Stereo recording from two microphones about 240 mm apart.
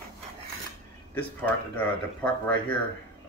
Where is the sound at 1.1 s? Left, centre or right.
Centre.